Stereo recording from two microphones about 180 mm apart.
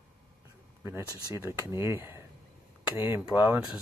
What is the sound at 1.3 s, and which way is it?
Speech, 15° right (ahead or behind).